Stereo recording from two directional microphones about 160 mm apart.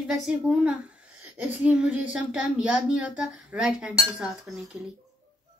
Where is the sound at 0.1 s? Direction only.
5° right (ahead or behind).